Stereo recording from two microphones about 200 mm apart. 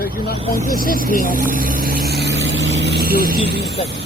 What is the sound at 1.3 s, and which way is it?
Speech, 45° right (ahead or behind).